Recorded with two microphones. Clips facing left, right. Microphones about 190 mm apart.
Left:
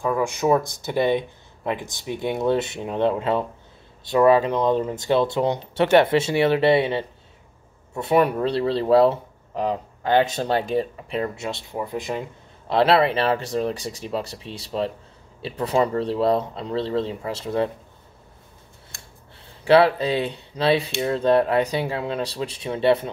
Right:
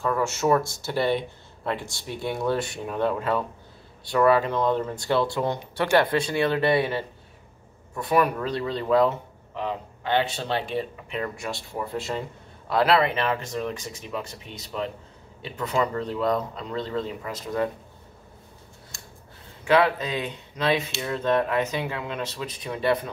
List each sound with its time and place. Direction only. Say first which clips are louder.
0.0 s speech: left 2 dB; 15° left (ahead or behind)
12.7 s speech: left 3 dB; 30° left (ahead or behind)
19.6 s speech: left 5 dB; 35° left (ahead or behind)